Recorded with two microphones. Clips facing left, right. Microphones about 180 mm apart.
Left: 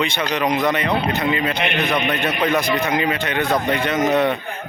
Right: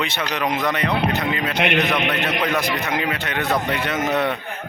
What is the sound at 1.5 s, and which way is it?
Speech, 80° right.